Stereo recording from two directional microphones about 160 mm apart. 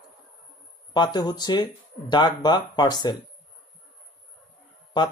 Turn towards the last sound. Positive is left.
turn(degrees=30)  # may be behind; listen again after turning